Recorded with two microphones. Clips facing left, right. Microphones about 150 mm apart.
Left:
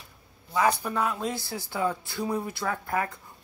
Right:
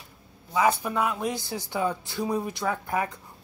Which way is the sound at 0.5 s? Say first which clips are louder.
Right 1 dB; 10° right (ahead or behind).